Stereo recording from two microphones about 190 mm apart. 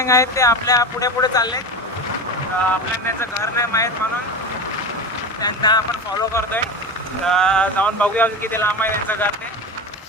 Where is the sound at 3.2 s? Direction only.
15° left (ahead or behind).